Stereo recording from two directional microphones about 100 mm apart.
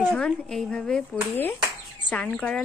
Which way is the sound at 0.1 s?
5° left (ahead or behind).